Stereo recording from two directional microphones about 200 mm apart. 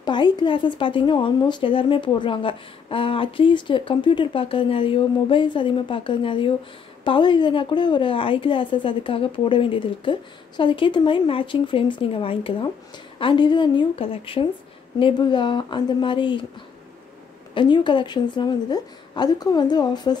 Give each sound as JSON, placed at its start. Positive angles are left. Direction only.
{"t": 0.0, "sound": "a woman's voice", "side_deg": 20}
{"t": 17.6, "sound": "a woman's voice", "side_deg": 25}